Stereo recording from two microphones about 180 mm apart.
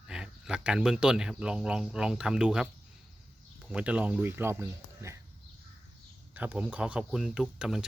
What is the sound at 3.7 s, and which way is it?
Speech, 5° right (ahead or behind).